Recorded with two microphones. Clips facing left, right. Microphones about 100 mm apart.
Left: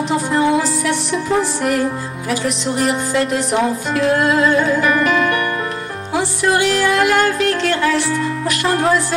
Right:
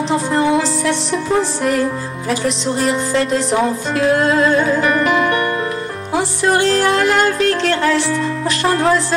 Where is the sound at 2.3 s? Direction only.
30° right (ahead or behind).